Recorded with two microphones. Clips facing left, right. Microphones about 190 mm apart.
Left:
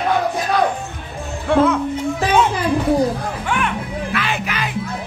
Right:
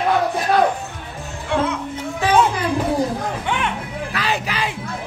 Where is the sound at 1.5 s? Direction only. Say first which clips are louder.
Left 6 dB; 60° left (ahead or behind).